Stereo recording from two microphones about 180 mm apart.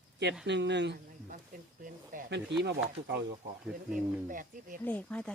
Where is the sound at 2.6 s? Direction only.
70° right (ahead or behind).